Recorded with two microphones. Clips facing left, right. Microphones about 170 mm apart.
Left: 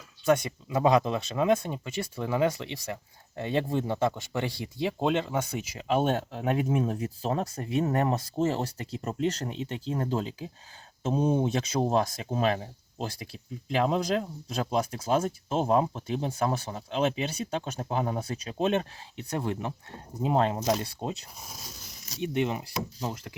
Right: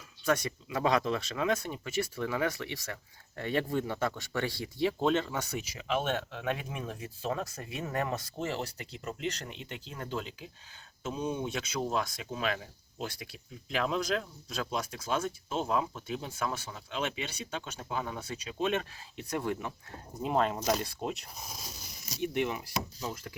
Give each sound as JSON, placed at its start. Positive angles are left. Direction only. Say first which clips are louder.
{"t": 0.3, "sound": "speech", "louder": "left 5 dB", "side_deg": 25}
{"t": 5.9, "sound": "speech", "louder": "left 6 dB", "side_deg": 35}
{"t": 21.5, "sound": "a sound", "louder": "even", "side_deg": 0}
{"t": 22.2, "sound": "speech", "louder": "left 3 dB", "side_deg": 25}